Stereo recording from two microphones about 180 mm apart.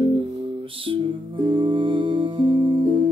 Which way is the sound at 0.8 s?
30° right (ahead or behind).